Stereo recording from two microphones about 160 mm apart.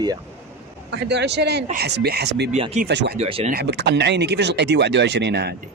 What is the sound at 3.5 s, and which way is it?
Speech, 80° right.